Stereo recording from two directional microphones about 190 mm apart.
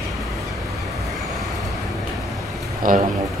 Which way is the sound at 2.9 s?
45° right (ahead or behind).